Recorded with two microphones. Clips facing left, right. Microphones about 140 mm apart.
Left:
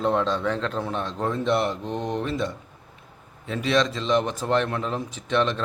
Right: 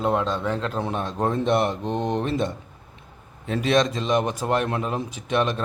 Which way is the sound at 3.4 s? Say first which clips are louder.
Right 3 dB; 50° right (ahead or behind).